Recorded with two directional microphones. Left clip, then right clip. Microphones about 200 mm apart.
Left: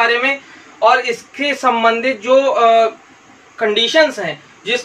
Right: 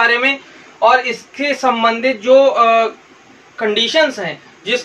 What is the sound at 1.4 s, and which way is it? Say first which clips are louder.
Speech: even; 5° right (ahead or behind).